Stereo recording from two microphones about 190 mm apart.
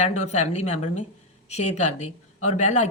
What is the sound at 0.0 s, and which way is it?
Speech, 40° left (ahead or behind).